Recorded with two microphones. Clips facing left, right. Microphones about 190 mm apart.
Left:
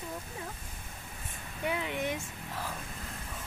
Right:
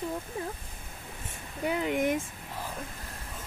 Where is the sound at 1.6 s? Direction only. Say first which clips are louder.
Right 5 dB; 40° right (ahead or behind).